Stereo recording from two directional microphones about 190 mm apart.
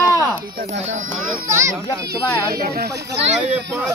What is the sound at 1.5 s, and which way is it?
Speech, 15° right (ahead or behind).